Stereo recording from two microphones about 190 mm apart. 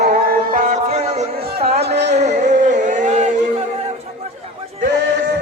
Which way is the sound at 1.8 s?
60° right (ahead or behind).